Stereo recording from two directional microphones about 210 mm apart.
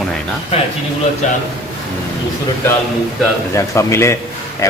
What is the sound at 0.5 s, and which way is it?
Speech, 30° left (ahead or behind).